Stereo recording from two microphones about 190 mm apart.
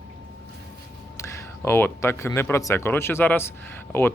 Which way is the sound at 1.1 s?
15° left (ahead or behind).